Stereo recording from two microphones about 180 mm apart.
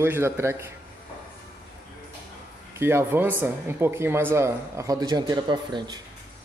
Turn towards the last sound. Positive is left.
turn(degrees=-25)  # may be behind; listen again after turning